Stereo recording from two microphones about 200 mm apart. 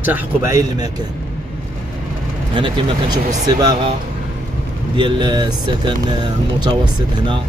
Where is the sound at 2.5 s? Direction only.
25° right (ahead or behind).